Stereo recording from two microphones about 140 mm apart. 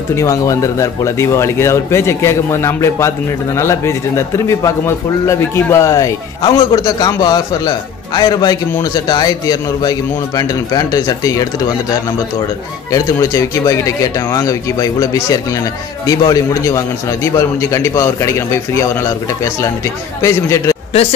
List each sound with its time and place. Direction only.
0.1 s a man's voice: 20° left (ahead or behind)
12.9 s a man's voice: 20° left (ahead or behind)